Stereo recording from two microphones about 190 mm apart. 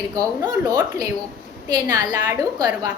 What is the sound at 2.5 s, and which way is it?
Speech, 20° right (ahead or behind).